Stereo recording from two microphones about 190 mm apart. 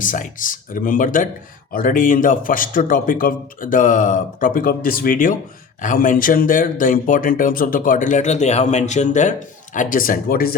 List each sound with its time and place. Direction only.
0.0 s speech: 45° left (ahead or behind)